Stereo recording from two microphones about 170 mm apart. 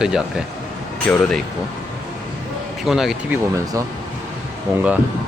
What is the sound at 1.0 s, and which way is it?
Speech, 10° left (ahead or behind).